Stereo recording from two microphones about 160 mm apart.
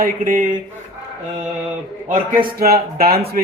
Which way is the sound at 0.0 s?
60° right (ahead or behind).